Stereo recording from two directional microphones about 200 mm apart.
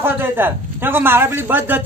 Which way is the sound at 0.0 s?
10° right (ahead or behind).